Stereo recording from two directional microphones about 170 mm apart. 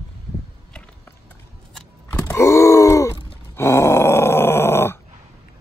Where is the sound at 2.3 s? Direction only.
15° left (ahead or behind).